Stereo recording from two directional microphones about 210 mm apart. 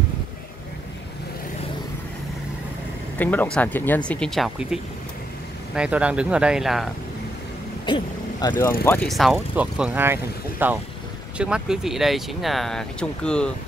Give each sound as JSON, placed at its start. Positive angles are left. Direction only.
{"t": 3.2, "sound": "speech", "side_deg": 10}
{"t": 5.8, "sound": "speech", "side_deg": -5}
{"t": 7.8, "sound": "speech", "side_deg": 20}
{"t": 8.8, "sound": "speech", "side_deg": 5}